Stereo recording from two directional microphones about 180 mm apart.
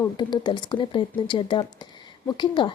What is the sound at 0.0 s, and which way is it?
A woman's voice, 25° left (ahead or behind).